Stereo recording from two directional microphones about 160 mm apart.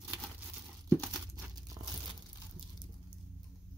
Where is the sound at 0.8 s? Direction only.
10° left (ahead or behind).